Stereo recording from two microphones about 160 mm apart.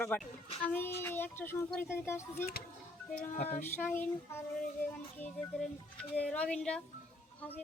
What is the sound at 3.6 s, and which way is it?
Child singing, 15° left (ahead or behind).